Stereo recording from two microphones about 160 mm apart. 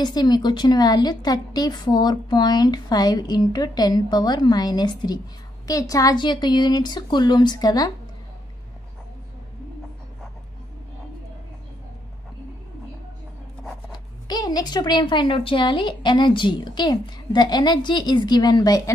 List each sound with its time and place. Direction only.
0.0 s a woman's voice: 25° left (ahead or behind)
14.2 s a woman's voice: 25° left (ahead or behind)